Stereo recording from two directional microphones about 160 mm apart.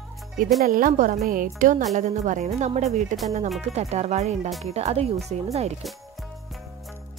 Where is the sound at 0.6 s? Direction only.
60° right (ahead or behind).